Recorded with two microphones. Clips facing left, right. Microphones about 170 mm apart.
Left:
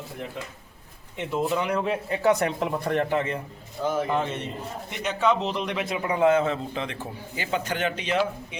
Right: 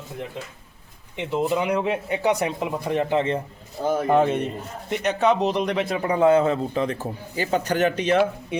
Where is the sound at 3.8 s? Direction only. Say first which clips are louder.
Right 6 dB; 45° right (ahead or behind).